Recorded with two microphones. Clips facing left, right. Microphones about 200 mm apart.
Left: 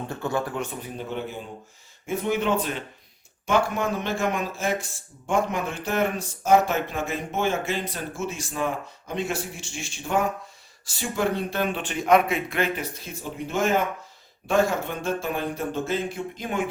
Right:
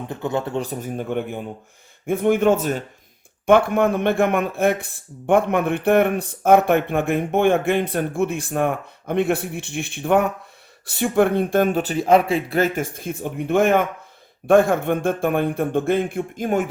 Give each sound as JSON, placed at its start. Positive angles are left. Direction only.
{"t": 0.1, "sound": "speech", "side_deg": -20}
{"t": 3.4, "sound": "speech", "side_deg": -55}